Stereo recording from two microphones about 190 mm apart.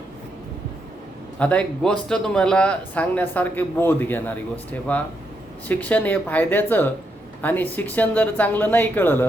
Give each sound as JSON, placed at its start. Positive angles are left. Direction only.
{"t": 1.4, "sound": "a man's voice", "side_deg": 5}